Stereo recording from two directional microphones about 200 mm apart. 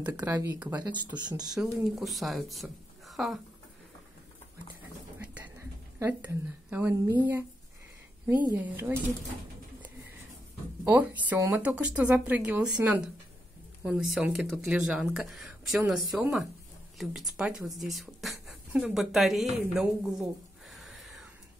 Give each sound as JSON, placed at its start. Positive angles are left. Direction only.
{"t": 0.0, "sound": "speech", "side_deg": -5}
{"t": 0.9, "sound": "speech", "side_deg": -20}
{"t": 1.5, "sound": "speech", "side_deg": 0}
{"t": 5.2, "sound": "a sound", "side_deg": -10}
{"t": 8.3, "sound": "speech", "side_deg": -10}
{"t": 10.8, "sound": "speech", "side_deg": -10}
{"t": 20.7, "sound": "a sound", "side_deg": 0}